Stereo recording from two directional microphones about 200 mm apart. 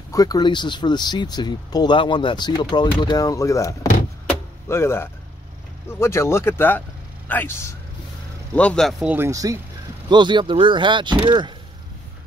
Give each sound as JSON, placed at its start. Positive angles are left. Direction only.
{"t": 0.1, "sound": "speech", "side_deg": 20}
{"t": 4.3, "sound": "vehicle", "side_deg": 10}
{"t": 5.9, "sound": "speech", "side_deg": 15}
{"t": 9.1, "sound": "speech", "side_deg": -15}